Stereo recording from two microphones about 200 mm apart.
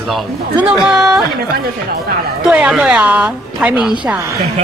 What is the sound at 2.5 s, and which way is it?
Speech, 5° right (ahead or behind).